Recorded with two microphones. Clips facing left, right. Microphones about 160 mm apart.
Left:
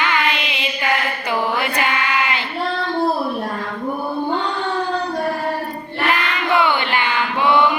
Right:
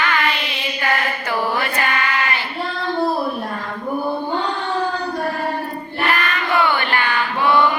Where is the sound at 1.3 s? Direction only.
20° left (ahead or behind).